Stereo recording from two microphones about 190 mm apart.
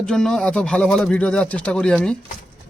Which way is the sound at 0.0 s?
5° left (ahead or behind).